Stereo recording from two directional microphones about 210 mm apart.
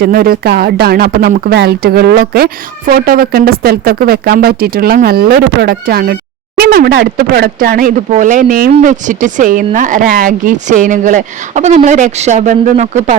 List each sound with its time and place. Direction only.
0.0 s speech: 45° right (ahead or behind)